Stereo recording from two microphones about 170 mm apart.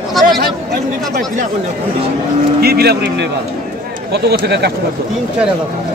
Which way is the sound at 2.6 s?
70° right (ahead or behind).